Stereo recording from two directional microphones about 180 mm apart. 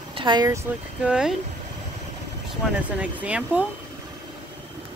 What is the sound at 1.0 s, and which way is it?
Speech, 5° right (ahead or behind).